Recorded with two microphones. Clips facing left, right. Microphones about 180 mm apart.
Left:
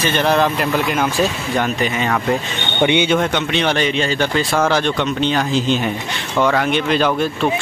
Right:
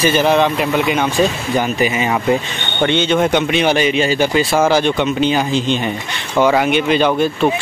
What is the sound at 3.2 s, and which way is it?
Speech, 10° right (ahead or behind).